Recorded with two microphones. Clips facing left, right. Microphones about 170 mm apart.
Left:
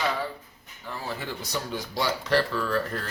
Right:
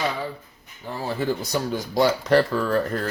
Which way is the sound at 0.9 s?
40° right (ahead or behind).